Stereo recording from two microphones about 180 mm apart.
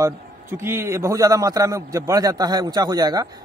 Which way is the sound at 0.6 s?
15° right (ahead or behind).